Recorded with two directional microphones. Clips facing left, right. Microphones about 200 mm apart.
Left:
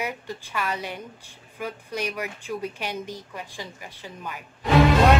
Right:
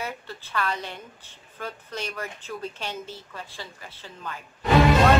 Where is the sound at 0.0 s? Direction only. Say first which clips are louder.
Left 3 dB; 15° left (ahead or behind).